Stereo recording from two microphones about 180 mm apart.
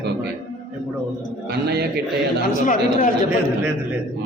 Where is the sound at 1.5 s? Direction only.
60° right (ahead or behind).